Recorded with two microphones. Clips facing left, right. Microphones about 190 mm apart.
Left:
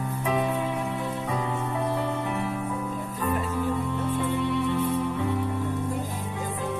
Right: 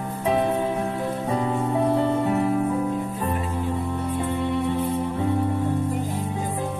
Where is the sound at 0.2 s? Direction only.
30° right (ahead or behind).